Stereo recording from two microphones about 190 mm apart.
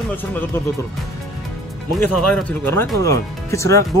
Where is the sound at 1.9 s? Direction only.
5° left (ahead or behind).